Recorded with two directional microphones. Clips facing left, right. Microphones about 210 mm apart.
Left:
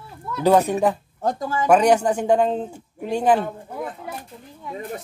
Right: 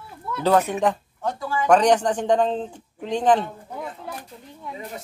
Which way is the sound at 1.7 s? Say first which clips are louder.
Left 1 dB; 10° left (ahead or behind).